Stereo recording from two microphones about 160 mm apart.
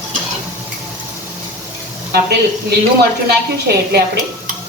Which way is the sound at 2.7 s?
85° right.